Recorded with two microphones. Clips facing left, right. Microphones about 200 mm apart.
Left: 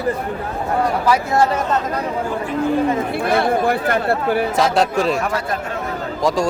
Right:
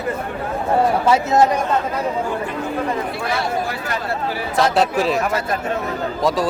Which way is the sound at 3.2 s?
55° left (ahead or behind).